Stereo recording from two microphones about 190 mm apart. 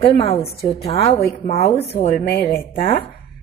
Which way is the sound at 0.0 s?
30° left (ahead or behind).